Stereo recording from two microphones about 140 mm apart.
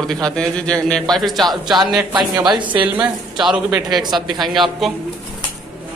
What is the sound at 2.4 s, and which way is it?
Speech, 30° right (ahead or behind).